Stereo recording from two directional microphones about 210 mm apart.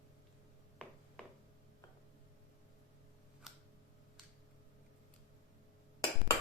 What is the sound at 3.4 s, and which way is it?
Tick-tock, centre (ahead or behind).